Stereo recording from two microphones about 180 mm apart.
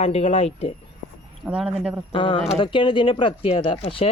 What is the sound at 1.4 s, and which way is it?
Speech, 5° right (ahead or behind).